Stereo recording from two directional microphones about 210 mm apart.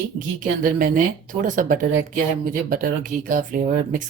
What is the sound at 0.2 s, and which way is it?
Speech, 40° right (ahead or behind).